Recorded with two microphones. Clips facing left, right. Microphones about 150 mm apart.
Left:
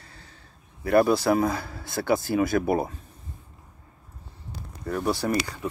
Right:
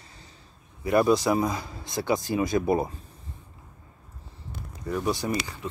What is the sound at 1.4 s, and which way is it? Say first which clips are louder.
Speech: left 2 dB; 15° right (ahead or behind).